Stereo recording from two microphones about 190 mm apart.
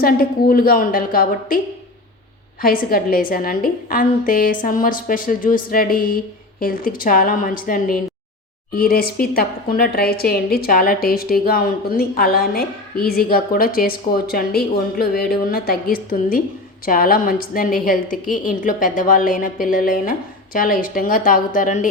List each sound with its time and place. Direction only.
0.0 s a woman's voice: 50° left (ahead or behind)